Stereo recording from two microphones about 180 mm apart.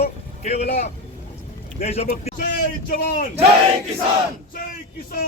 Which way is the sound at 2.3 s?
50° left (ahead or behind).